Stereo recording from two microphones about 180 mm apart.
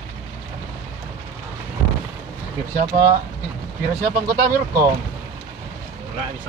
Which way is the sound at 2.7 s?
50° right (ahead or behind).